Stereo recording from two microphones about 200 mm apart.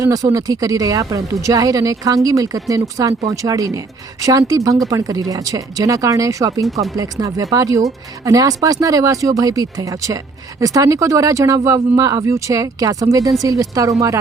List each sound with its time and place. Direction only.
0.0 s a woman's voice: 15° right (ahead or behind)